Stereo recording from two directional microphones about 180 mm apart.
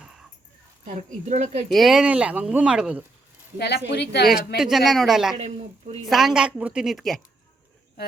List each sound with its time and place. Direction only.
0.9 s speech: 40° right (ahead or behind)
1.7 s speech: centre (ahead or behind)
3.6 s speech: 70° left (ahead or behind)
4.3 s speech: centre (ahead or behind)
5.4 s speech: 35° right (ahead or behind)
6.1 s speech: centre (ahead or behind)